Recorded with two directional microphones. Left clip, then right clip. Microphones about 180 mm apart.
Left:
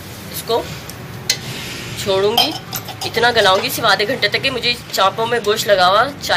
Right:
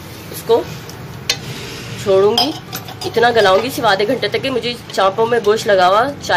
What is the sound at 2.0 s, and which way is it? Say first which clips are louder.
Speech: right 2 dB; 25° right (ahead or behind).